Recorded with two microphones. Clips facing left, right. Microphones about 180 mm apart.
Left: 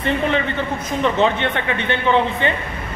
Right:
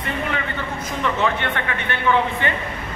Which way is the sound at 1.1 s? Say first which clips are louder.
Left 4 dB; 20° left (ahead or behind).